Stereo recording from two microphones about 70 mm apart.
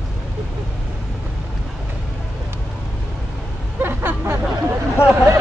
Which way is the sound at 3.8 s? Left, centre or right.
Right.